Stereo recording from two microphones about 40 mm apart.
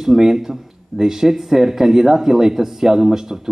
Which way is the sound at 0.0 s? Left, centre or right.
Centre.